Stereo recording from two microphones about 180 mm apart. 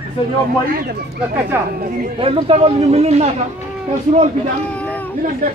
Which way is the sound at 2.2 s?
30° right (ahead or behind).